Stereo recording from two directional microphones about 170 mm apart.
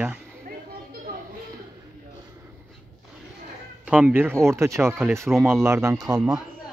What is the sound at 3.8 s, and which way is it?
Speech, 10° right (ahead or behind).